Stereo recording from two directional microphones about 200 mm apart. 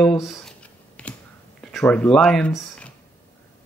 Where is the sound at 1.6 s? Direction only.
5° left (ahead or behind).